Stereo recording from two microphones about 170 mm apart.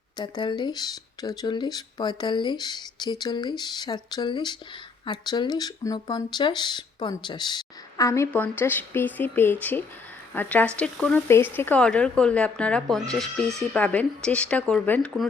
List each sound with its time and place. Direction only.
0.2 s speech: 25° left (ahead or behind); by 15.3 s 5° left (ahead or behind)